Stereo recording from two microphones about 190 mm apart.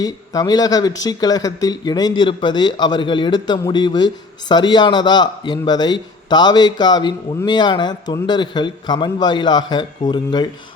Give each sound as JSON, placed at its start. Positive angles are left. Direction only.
{"t": 0.0, "sound": "speech", "side_deg": 20}